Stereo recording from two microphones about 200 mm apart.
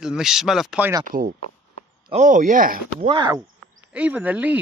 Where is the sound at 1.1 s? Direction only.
40° right (ahead or behind).